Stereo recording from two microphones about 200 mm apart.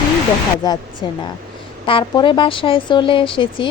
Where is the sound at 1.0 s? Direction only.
25° left (ahead or behind).